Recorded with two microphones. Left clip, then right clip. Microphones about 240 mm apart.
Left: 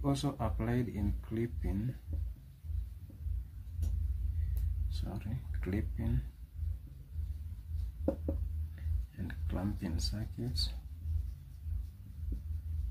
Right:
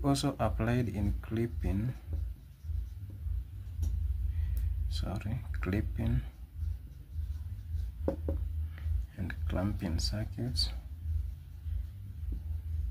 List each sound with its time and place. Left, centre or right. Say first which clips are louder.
0.0 s speech: right 5 dB; right
4.8 s speech: right 6 dB; right
9.1 s speech: right 5 dB; centre